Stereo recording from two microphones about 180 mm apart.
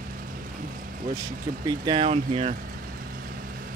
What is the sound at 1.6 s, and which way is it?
Speech, 25° right (ahead or behind).